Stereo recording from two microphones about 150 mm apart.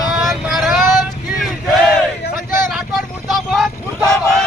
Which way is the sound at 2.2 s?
90° left.